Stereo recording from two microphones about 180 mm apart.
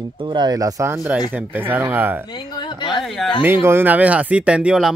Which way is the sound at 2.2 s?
25° left (ahead or behind).